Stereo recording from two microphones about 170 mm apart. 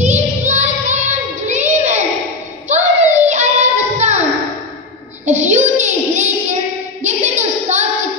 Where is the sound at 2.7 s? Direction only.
45° right (ahead or behind).